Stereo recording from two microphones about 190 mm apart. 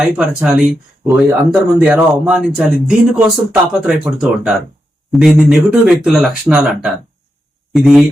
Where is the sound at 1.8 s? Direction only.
5° right (ahead or behind).